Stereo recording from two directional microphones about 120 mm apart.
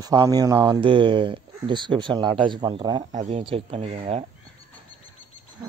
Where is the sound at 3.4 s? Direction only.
55° right (ahead or behind).